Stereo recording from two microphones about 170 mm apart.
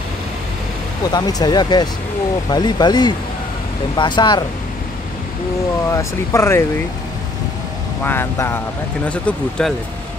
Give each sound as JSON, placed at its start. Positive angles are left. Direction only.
{"t": 1.1, "sound": "speech", "side_deg": 20}
{"t": 5.9, "sound": "speech", "side_deg": 15}
{"t": 8.0, "sound": "speech", "side_deg": 15}